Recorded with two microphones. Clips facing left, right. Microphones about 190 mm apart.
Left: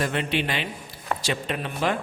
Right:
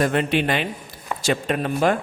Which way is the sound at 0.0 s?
50° right (ahead or behind).